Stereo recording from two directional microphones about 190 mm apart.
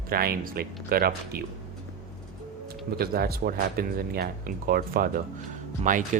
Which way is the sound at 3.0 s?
55° right (ahead or behind).